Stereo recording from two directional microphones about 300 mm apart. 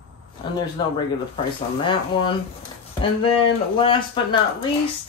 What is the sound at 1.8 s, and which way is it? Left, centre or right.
Speech, centre.